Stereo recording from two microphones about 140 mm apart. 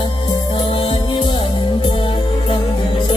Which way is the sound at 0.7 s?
40° left (ahead or behind).